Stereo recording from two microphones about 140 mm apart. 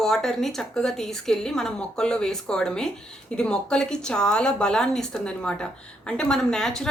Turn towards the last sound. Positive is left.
turn(degrees=5)  # may be behind; listen again after turning